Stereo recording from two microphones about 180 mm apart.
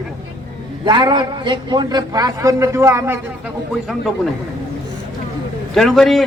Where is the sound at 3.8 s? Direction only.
Centre (ahead or behind).